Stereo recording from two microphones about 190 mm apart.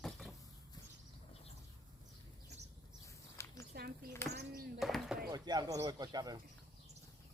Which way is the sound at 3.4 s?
15° left (ahead or behind).